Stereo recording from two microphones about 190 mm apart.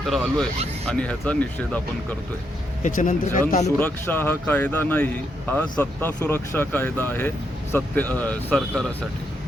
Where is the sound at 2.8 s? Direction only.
45° left (ahead or behind).